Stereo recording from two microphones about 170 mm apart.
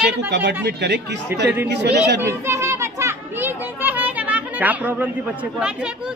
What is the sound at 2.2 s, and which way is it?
Children playing, 15° right (ahead or behind).